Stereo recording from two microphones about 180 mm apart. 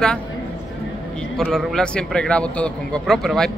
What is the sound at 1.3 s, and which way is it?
A man's voice, centre (ahead or behind).